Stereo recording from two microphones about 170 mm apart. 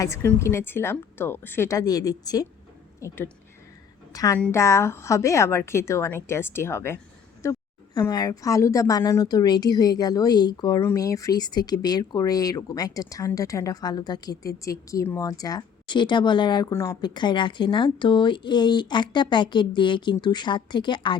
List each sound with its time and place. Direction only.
0.0 s a woman's voice: 15° left (ahead or behind)
17.2 s a woman's voice: 30° left (ahead or behind)